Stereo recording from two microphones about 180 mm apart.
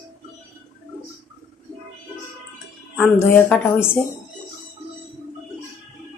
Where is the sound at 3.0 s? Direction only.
10° left (ahead or behind).